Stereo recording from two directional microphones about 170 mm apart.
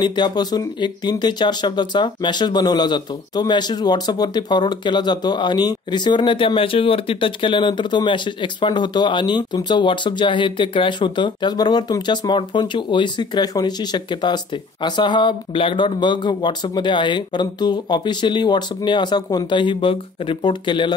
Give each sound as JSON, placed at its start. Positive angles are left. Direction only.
{"t": 0.0, "sound": "speech", "side_deg": 25}